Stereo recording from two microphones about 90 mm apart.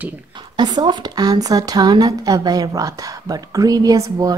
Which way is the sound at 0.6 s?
50° right (ahead or behind).